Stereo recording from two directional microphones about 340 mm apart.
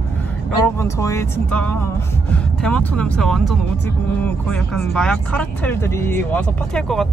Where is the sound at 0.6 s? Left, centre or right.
Centre.